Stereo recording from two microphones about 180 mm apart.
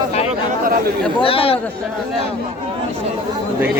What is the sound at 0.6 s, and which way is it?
Speech, 50° right (ahead or behind).